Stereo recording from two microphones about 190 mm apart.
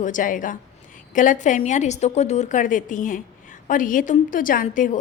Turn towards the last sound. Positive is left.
turn(degrees=45)  # may be behind; listen again after turning